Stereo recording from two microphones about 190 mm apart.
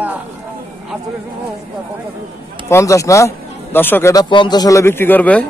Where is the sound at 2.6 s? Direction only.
15° left (ahead or behind).